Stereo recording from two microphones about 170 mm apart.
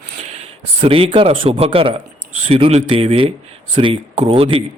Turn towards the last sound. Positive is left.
turn(degrees=-35)  # may be behind; listen again after turning